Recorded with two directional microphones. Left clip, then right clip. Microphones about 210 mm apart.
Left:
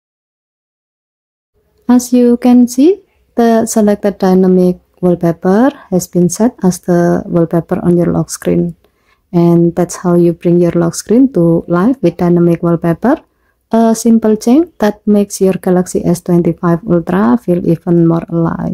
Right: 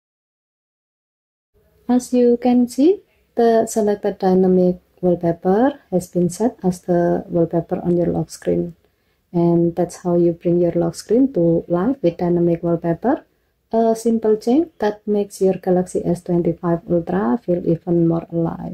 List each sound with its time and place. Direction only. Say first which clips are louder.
1.9 s speech: left 6 dB; 25° left (ahead or behind)